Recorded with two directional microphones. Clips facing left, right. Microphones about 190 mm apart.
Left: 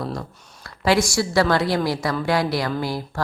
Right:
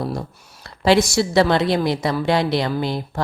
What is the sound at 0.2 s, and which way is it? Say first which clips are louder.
Speech: right 3 dB; 25° right (ahead or behind).